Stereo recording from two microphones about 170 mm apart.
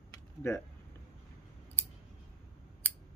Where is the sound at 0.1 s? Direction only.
15° left (ahead or behind).